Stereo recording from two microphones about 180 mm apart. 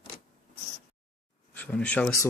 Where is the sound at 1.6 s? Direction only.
10° left (ahead or behind).